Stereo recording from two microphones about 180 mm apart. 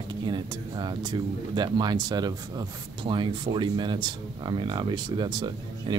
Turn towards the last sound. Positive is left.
turn(degrees=-25)  # may be behind; listen again after turning